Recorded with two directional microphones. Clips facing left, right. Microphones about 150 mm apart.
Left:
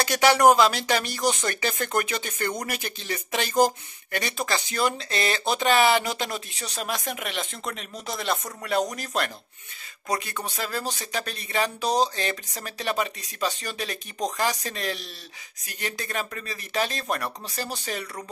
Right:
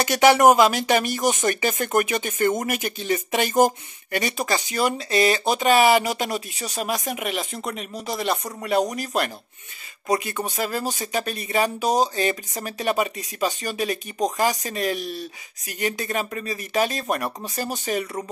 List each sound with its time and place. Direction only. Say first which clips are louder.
0.0 s speech: right 3 dB; 15° right (ahead or behind)